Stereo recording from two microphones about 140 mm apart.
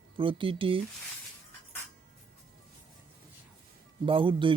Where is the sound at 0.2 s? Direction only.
35° right (ahead or behind).